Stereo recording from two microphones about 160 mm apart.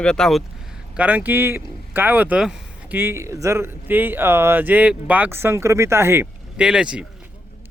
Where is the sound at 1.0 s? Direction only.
10° right (ahead or behind).